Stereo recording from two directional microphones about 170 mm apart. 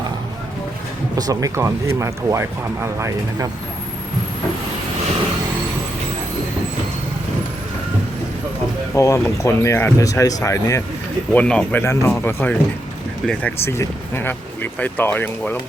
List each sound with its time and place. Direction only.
1.1 s speech: 20° right (ahead or behind)
9.0 s speech: 15° left (ahead or behind)